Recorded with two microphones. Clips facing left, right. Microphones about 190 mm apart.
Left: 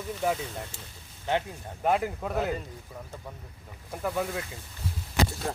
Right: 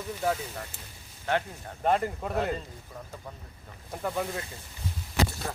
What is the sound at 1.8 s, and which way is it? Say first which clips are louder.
Speech: even; 5° left (ahead or behind).